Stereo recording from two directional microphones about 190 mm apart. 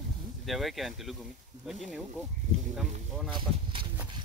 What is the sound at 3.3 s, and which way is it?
Speech, 25° right (ahead or behind).